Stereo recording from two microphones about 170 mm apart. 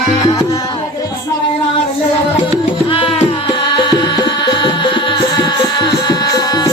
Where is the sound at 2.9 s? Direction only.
35° left (ahead or behind).